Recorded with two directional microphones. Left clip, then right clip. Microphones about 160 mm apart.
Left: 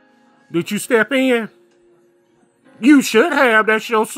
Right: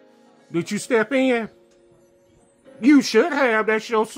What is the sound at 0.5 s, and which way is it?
Speech, 15° left (ahead or behind).